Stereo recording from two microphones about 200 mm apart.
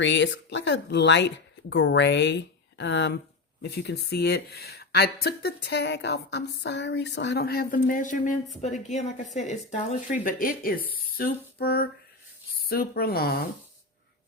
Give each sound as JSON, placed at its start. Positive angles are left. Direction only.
{"t": 0.0, "sound": "a woman's voice", "side_deg": 60}